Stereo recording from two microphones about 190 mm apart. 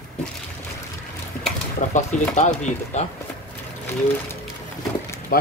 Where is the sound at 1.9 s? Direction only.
40° left (ahead or behind).